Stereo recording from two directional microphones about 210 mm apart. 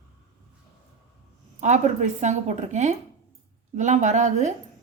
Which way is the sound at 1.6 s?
35° right (ahead or behind).